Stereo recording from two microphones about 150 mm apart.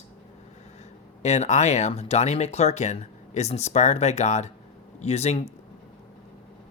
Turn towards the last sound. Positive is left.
turn(degrees=45)  # may be behind; listen again after turning